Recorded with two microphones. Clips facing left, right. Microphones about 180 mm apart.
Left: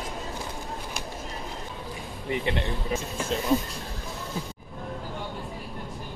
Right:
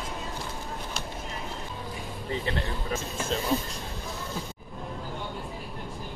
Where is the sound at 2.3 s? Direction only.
20° left (ahead or behind).